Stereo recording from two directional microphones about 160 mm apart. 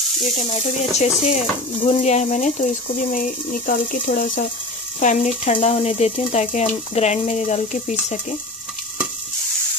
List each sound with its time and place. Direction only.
0.4 s speech: 45° left (ahead or behind)